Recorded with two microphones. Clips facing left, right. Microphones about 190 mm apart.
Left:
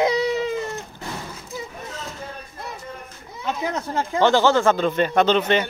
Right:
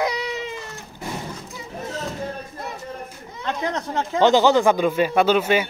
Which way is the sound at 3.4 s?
5° left (ahead or behind).